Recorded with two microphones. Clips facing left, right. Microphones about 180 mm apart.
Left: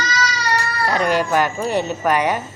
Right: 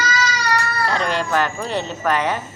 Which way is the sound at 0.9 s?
10° left (ahead or behind).